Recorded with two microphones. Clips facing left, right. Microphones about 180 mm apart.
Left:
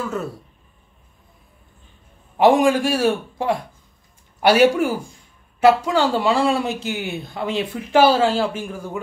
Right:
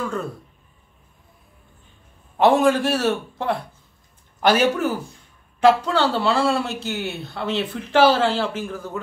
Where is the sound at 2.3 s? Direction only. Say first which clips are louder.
Left 2 dB; 10° left (ahead or behind).